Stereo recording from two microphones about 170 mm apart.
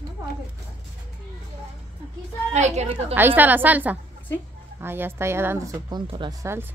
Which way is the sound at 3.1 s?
10° right (ahead or behind).